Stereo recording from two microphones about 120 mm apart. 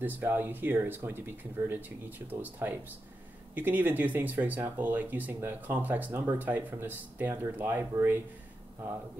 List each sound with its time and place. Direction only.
0.0 s speech: 15° right (ahead or behind)